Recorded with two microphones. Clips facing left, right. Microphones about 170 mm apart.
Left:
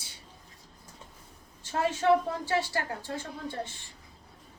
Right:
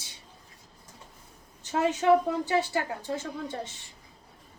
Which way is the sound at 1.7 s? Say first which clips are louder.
Right 2 dB; 20° right (ahead or behind).